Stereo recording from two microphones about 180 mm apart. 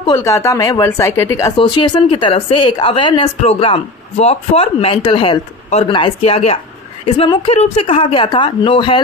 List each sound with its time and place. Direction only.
0.0 s speech: 15° left (ahead or behind)
1.6 s speech: 25° left (ahead or behind)